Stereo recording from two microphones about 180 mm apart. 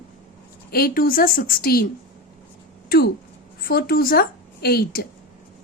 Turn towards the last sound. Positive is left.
turn(degrees=60)  # may be behind; listen again after turning